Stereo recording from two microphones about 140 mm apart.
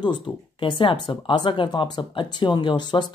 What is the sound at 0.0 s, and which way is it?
Speech, 35° left (ahead or behind).